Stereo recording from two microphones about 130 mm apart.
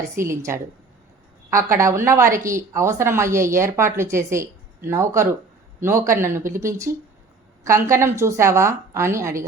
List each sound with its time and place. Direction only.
0.2 s a woman's voice: 20° right (ahead or behind)